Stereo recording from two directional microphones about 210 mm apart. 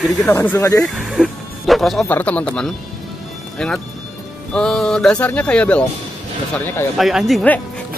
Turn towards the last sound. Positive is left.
turn(degrees=0)  # may be behind; listen again after turning